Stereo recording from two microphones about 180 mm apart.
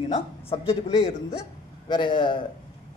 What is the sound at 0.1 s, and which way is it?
Speech, 35° left (ahead or behind).